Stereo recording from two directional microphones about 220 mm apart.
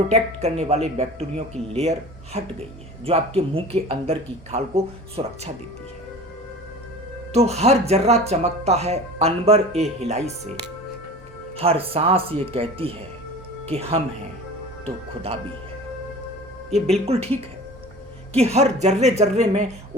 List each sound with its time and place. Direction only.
0.1 s speech: 30° right (ahead or behind)
7.3 s speech: 30° right (ahead or behind)
11.5 s speech: 25° right (ahead or behind)
16.8 s speech: 25° right (ahead or behind)